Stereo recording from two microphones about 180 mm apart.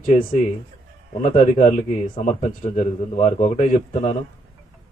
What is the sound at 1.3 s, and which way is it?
A man's voice, 40° left (ahead or behind).